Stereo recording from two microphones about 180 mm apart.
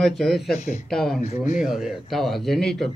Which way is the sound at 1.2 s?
40° left (ahead or behind).